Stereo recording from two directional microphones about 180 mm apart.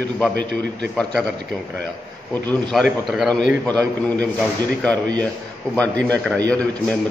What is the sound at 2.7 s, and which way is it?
A man's voice, centre (ahead or behind).